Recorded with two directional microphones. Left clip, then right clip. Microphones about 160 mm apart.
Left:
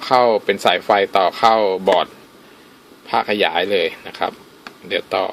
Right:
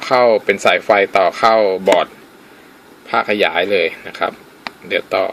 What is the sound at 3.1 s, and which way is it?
Speech, 10° left (ahead or behind).